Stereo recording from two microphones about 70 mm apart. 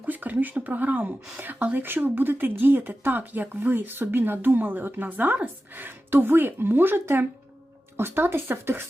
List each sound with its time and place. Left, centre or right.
0.0 s a woman's voice: right